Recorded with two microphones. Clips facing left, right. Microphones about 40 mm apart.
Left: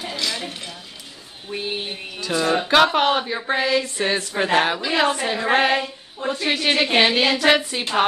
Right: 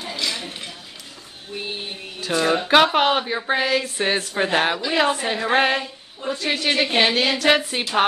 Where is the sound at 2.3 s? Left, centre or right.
Centre.